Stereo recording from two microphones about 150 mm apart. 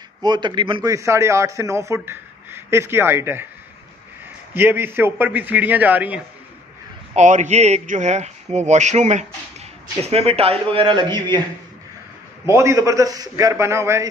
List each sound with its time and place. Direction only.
0.2 s speech: 30° right (ahead or behind)
0.9 s speech: 20° right (ahead or behind)
4.6 s a man's voice: 15° right (ahead or behind)
7.2 s a man's voice: 55° right (ahead or behind); by 11.2 s 30° right (ahead or behind)
12.4 s speech: 20° right (ahead or behind)